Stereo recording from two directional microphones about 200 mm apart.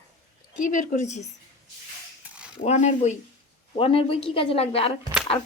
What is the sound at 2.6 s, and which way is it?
Speech, 35° left (ahead or behind).